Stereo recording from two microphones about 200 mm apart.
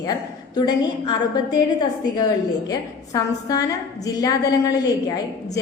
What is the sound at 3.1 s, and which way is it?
A woman's voice, 15° left (ahead or behind).